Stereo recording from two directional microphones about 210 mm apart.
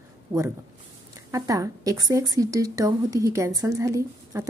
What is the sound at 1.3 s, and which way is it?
A woman's voice, 15° right (ahead or behind).